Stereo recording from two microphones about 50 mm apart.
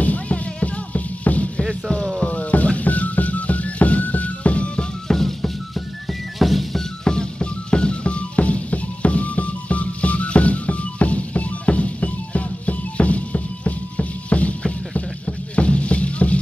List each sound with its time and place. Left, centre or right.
0.0 s music: left
5.0 s music: centre
7.1 s music: centre